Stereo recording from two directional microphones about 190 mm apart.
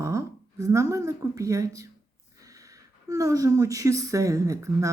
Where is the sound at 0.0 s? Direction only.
15° right (ahead or behind).